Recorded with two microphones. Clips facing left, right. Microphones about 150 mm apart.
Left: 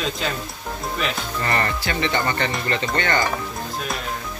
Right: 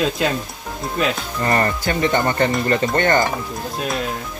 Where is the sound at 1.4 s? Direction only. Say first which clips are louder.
Right 5 dB; 40° right (ahead or behind).